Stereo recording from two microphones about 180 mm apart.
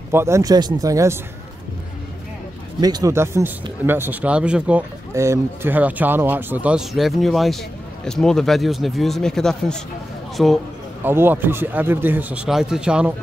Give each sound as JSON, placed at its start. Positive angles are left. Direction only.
{"t": 0.1, "sound": "speech", "side_deg": -15}
{"t": 2.8, "sound": "speech", "side_deg": -20}
{"t": 11.1, "sound": "speech", "side_deg": -10}